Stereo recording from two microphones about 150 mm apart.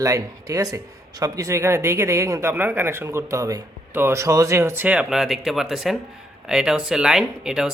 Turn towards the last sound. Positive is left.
turn(degrees=-5)  # may be behind; listen again after turning